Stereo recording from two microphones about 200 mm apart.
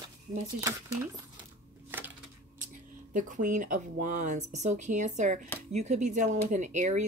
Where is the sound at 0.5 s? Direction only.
15° right (ahead or behind).